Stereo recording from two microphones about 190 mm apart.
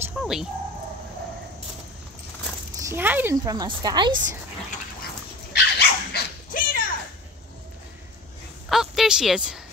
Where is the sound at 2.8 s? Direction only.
10° right (ahead or behind).